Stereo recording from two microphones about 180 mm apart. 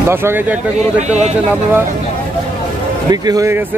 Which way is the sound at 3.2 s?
20° right (ahead or behind).